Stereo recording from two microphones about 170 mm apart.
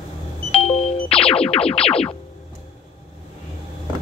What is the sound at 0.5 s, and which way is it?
Music, 35° left (ahead or behind).